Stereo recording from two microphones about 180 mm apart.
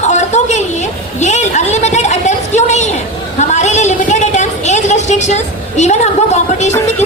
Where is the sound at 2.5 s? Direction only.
40° left (ahead or behind).